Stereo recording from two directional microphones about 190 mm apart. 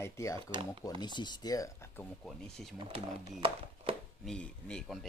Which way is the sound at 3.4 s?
30° right (ahead or behind).